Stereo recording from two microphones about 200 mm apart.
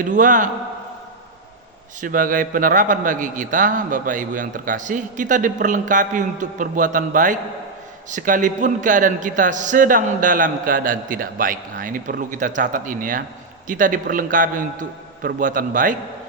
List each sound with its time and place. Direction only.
0.0 s a man's voice: 40° right (ahead or behind)
2.0 s a man's voice: 45° right (ahead or behind)